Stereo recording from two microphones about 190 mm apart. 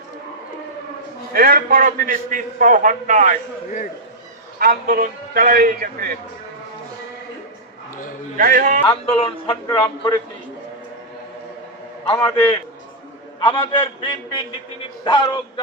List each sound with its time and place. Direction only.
1.3 s a man's voice: 50° right (ahead or behind)
4.6 s a man's voice: 50° right (ahead or behind)
8.4 s a man's voice: 45° right (ahead or behind)
9.0 s a man's voice: 30° left (ahead or behind)
12.1 s a man's voice: 10° left (ahead or behind)
13.4 s a man's voice: 25° left (ahead or behind)